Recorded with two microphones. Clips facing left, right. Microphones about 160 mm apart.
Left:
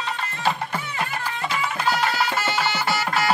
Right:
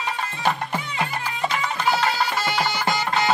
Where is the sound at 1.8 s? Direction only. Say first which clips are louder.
Right 1 dB; 15° right (ahead or behind).